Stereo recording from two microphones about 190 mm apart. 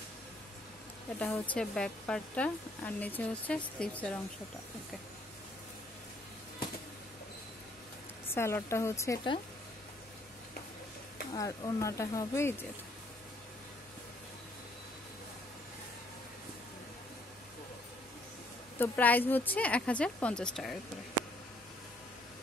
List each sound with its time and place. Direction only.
1.5 s a woman's voice: 5° left (ahead or behind)
8.4 s a woman's voice: 15° left (ahead or behind)
11.3 s a woman's voice: 20° left (ahead or behind)
18.8 s a woman's voice: 10° left (ahead or behind)